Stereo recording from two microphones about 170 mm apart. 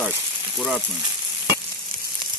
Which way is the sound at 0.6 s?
Centre (ahead or behind).